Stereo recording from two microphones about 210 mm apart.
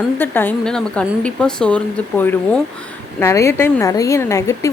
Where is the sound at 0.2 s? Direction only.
10° left (ahead or behind).